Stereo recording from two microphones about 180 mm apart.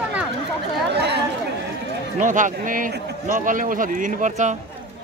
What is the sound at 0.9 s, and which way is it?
Chatter, 70° right (ahead or behind).